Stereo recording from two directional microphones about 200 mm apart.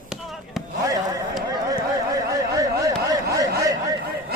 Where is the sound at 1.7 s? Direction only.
15° right (ahead or behind).